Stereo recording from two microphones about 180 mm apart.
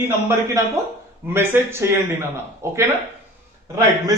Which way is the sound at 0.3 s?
15° right (ahead or behind).